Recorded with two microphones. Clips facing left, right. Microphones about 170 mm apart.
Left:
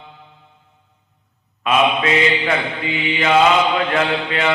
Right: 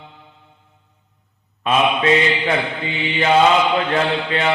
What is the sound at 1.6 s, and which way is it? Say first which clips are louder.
Mantra: even; 30° right (ahead or behind).